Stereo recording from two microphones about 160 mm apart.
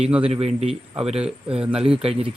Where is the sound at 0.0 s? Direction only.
5° right (ahead or behind).